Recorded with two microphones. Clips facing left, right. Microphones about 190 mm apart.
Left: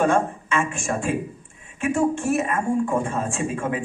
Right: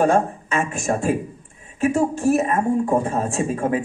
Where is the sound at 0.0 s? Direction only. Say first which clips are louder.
Right 2 dB; 40° right (ahead or behind).